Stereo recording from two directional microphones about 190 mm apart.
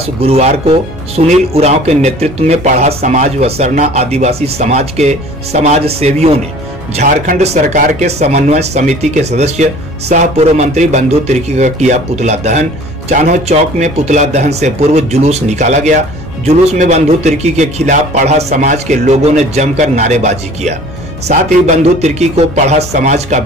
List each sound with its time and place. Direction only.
0.0 s speech: 30° right (ahead or behind)